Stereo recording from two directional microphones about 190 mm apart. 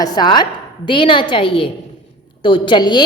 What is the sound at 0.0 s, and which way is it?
A woman's voice, 20° left (ahead or behind).